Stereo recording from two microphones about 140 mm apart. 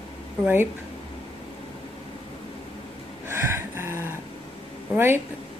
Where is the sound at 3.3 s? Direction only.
15° right (ahead or behind).